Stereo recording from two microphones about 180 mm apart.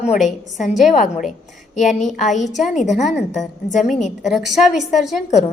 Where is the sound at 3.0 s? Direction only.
Centre (ahead or behind).